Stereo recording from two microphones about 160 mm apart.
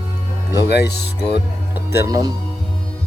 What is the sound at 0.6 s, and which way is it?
Speech, 90° left.